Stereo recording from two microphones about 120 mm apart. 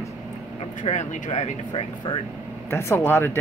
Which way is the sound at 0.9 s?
80° left.